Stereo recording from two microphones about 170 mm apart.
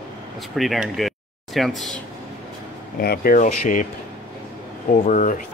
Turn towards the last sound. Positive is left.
turn(degrees=50)  # may be behind; listen again after turning